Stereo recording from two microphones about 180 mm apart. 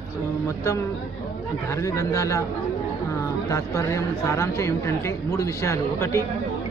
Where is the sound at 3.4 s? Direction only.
15° left (ahead or behind).